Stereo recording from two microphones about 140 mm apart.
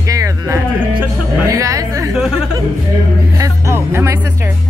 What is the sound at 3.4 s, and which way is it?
Speech, 20° right (ahead or behind).